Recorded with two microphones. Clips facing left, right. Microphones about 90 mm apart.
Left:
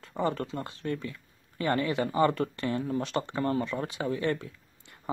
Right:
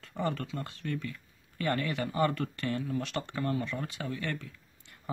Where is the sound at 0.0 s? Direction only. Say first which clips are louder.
Left 4 dB; 20° left (ahead or behind).